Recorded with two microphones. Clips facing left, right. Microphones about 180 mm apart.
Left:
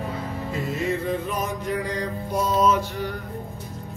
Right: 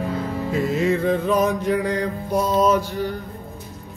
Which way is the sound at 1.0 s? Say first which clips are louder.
Right 8 dB; 90° right.